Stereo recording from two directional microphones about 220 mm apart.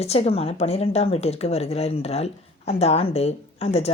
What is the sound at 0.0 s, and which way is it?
A woman's voice, 30° left (ahead or behind).